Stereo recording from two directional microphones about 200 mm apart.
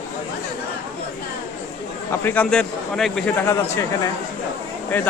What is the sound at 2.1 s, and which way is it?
Speech, 10° left (ahead or behind).